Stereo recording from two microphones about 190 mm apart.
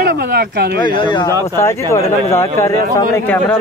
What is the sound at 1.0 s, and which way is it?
Speech, 25° left (ahead or behind).